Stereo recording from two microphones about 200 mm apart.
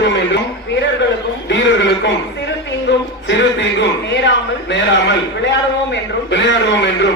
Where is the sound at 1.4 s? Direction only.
65° left (ahead or behind).